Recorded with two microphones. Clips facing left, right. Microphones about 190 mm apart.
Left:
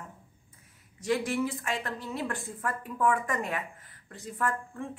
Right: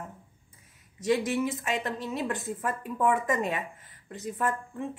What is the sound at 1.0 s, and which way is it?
Speech, 20° right (ahead or behind).